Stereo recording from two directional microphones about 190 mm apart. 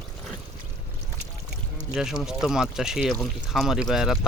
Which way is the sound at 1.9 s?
5° right (ahead or behind).